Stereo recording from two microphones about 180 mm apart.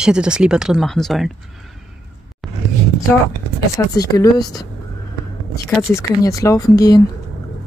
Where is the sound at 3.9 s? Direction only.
20° left (ahead or behind).